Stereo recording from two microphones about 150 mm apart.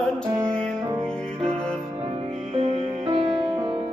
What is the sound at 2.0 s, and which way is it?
Music, 45° right (ahead or behind).